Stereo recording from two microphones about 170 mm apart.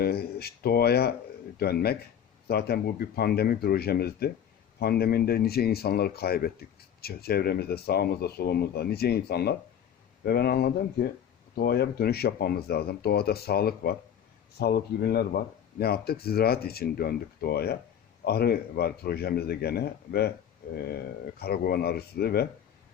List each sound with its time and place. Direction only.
0.0 s speech: 65° left (ahead or behind)